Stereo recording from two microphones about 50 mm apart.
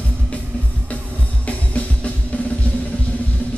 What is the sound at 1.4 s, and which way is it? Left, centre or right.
Music, left.